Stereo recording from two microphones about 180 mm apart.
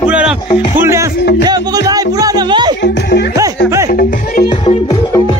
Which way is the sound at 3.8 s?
45° left (ahead or behind).